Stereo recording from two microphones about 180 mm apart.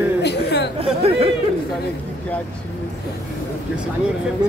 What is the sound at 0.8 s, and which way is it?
Speech, 35° right (ahead or behind).